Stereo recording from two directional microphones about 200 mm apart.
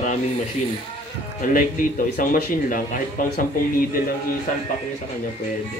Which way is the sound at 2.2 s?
45° left (ahead or behind).